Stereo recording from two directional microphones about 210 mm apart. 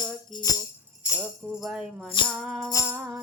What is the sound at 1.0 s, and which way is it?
Music, 5° right (ahead or behind).